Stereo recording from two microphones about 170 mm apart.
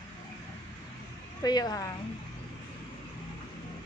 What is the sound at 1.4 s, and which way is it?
Speech, 25° left (ahead or behind).